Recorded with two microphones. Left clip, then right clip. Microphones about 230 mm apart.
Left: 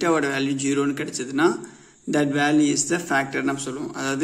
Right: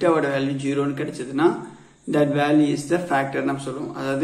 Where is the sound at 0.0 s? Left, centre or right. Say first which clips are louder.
Right 2 dB; left.